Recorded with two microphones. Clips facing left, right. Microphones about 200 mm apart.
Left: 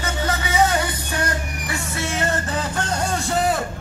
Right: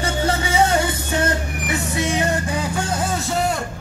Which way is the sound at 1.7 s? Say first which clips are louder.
Right 5 dB; 15° right (ahead or behind).